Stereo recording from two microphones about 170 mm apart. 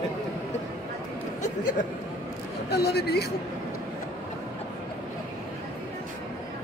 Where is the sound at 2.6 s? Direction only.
75° left (ahead or behind).